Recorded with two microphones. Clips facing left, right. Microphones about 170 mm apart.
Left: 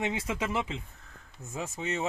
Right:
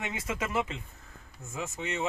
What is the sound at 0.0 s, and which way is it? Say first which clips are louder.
Speech: left 3 dB; 25° left (ahead or behind).